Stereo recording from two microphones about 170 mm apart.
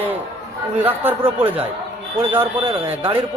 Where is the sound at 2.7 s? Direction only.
30° right (ahead or behind).